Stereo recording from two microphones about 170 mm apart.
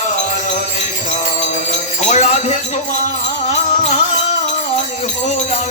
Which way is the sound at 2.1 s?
45° left (ahead or behind).